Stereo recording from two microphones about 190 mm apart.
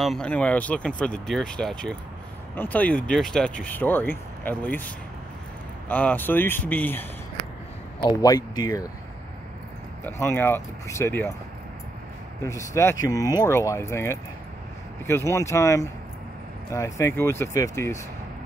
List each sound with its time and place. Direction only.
0.0 s speech: 5° left (ahead or behind); by 8.9 s 20° left (ahead or behind)
10.0 s speech: 10° left (ahead or behind)
12.4 s speech: 15° left (ahead or behind)